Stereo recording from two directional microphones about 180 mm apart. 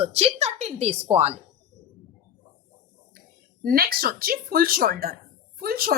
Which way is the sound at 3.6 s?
55° right (ahead or behind).